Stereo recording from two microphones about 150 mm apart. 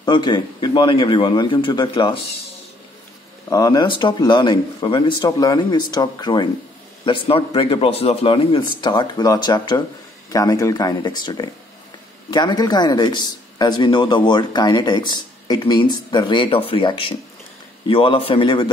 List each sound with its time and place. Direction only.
0.0 s a man's voice: 30° left (ahead or behind)
3.4 s a man's voice: 25° left (ahead or behind)